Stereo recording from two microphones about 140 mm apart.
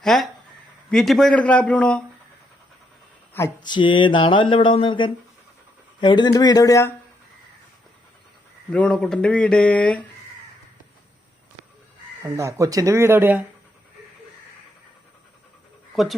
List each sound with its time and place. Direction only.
0.0 s speech: centre (ahead or behind)
3.6 s speech: 35° left (ahead or behind)
8.7 s speech: 5° left (ahead or behind)
12.2 s speech: 20° right (ahead or behind)
16.0 s speech: centre (ahead or behind)